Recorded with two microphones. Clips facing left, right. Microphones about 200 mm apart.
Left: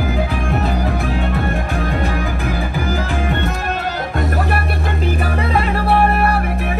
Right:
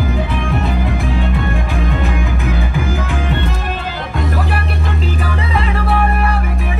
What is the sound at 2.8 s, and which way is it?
Music, 35° left (ahead or behind).